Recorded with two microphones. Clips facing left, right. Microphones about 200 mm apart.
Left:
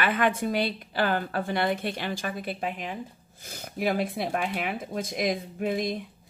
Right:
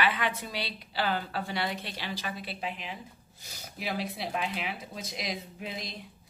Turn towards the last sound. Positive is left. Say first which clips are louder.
# left 12 dB
turn(degrees=50)  # may be behind; listen again after turning